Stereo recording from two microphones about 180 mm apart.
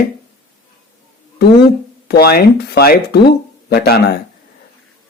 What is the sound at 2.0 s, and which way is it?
Speech, 60° left (ahead or behind).